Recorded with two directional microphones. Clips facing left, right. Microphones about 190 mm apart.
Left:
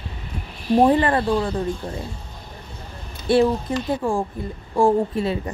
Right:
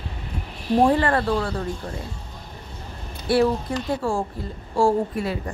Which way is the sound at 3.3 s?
20° left (ahead or behind).